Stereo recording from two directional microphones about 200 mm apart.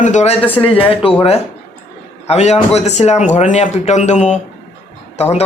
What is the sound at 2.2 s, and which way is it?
Speech, 35° left (ahead or behind).